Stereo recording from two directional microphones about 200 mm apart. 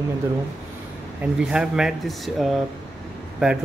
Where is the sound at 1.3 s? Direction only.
5° right (ahead or behind).